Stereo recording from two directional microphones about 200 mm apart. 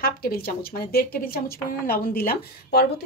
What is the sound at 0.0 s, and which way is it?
A woman's voice, 50° left (ahead or behind).